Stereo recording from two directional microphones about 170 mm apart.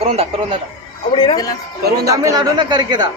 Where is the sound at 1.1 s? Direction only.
30° left (ahead or behind).